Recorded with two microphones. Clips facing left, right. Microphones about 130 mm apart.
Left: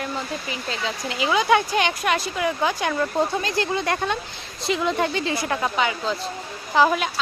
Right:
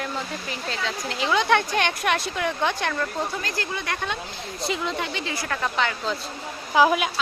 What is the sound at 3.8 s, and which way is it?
Speech, 35° left (ahead or behind).